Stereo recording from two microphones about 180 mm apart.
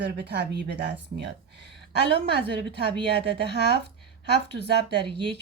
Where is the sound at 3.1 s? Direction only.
65° right (ahead or behind).